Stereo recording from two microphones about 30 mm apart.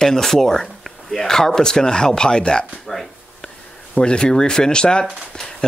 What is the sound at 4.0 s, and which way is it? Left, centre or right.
Speech, left.